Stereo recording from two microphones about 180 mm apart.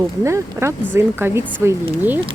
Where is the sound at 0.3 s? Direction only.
15° right (ahead or behind).